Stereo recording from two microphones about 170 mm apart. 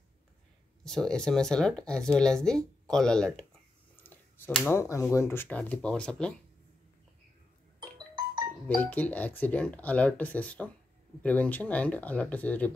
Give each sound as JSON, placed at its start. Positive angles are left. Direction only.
{"t": 0.8, "sound": "speech", "side_deg": 5}
{"t": 3.9, "sound": "finger snapping", "side_deg": 10}
{"t": 4.7, "sound": "speech", "side_deg": 15}
{"t": 8.6, "sound": "speech", "side_deg": 10}